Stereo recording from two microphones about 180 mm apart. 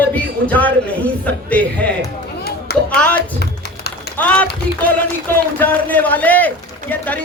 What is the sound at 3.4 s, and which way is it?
Music, 60° left (ahead or behind).